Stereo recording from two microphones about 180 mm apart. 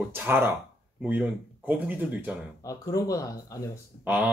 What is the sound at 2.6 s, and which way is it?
Speech, 20° left (ahead or behind).